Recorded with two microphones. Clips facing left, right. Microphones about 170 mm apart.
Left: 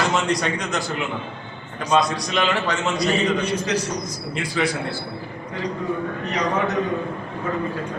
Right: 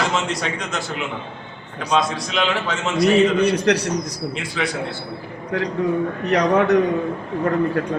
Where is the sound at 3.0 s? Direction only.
65° right (ahead or behind).